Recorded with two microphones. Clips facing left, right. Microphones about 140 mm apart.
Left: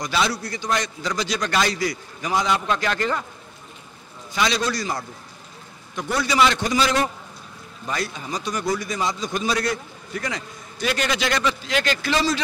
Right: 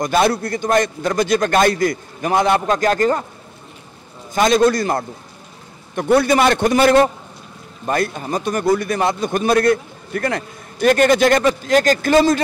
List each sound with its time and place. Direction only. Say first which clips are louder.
0.0 s a man's voice: right 8 dB; 50° right (ahead or behind)
4.3 s a man's voice: right 9 dB; 50° right (ahead or behind)